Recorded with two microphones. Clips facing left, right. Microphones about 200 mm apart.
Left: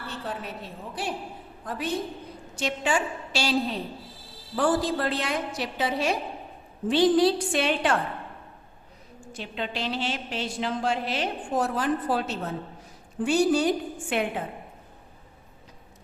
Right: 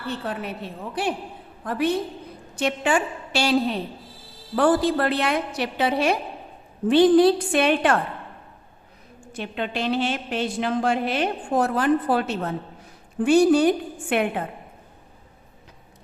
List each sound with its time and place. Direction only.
0.1 s a woman's voice: 65° right (ahead or behind)
1.6 s a woman's voice: 60° right (ahead or behind)
9.3 s a woman's voice: 55° right (ahead or behind)